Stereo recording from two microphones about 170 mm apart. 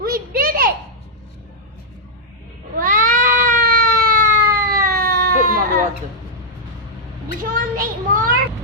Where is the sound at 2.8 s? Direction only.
55° right (ahead or behind).